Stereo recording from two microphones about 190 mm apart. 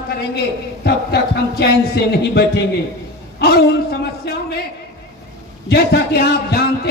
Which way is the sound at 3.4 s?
55° left (ahead or behind).